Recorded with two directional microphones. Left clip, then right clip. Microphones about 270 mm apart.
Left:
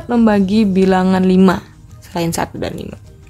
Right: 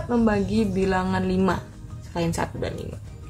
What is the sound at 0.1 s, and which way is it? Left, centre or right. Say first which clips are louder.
A woman's voice: left 9 dB; left.